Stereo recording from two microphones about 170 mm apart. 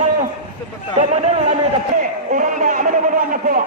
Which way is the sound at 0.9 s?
40° right (ahead or behind).